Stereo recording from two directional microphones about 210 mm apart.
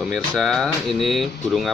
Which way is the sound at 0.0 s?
Centre (ahead or behind).